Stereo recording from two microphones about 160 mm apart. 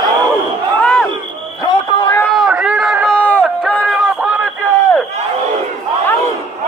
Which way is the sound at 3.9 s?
5° right (ahead or behind).